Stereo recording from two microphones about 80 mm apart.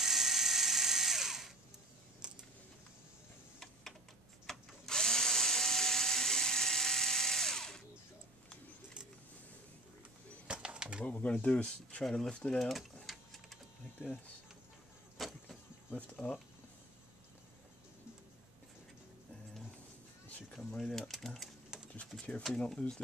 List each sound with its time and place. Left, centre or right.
0.0 s electric toothbrush: centre
2.2 s a sound: centre
3.5 s typing: centre
4.5 s drill: centre
10.4 s a sound: centre
11.1 s speech: centre
12.5 s a sound: centre
15.1 s vehicle: centre
15.9 s speech: centre
20.8 s mechanisms: centre
21.7 s typewriter: centre
22.6 s speech: centre